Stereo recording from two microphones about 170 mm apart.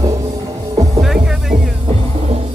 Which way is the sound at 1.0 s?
Centre (ahead or behind).